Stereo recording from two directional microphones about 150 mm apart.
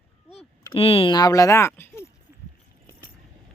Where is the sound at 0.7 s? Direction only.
40° left (ahead or behind); by 2.0 s 15° left (ahead or behind).